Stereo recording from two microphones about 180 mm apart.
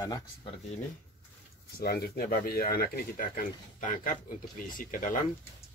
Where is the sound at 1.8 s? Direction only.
60° left (ahead or behind).